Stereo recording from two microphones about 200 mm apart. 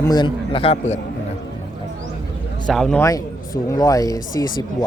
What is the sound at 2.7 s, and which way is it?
Speech, centre (ahead or behind).